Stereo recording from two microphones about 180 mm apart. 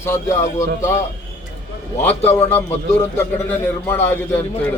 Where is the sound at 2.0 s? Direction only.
10° left (ahead or behind).